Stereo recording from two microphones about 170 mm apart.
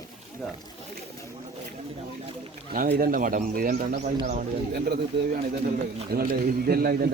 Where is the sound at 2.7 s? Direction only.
60° right (ahead or behind).